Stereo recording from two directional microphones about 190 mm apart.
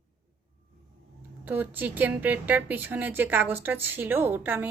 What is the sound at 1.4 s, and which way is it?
A woman's voice, 10° right (ahead or behind).